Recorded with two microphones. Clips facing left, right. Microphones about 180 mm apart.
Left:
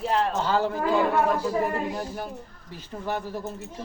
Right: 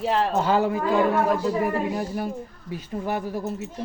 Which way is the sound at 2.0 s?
10° right (ahead or behind).